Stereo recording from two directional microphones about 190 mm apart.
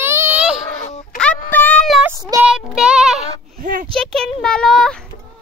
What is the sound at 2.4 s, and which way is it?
Child singing, 5° right (ahead or behind).